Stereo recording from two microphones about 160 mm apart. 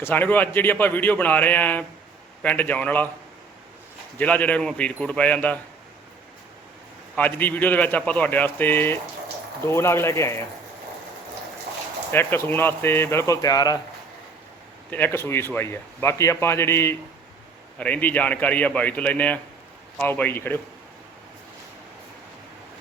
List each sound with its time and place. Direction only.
0.0 s speech: 10° left (ahead or behind)
4.2 s speech: 10° left (ahead or behind)
7.2 s speech: 10° left (ahead or behind)
12.1 s speech: 15° left (ahead or behind)
14.8 s speech: 10° left (ahead or behind)